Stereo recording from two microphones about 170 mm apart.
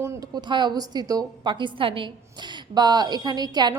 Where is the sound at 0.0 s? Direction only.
20° right (ahead or behind).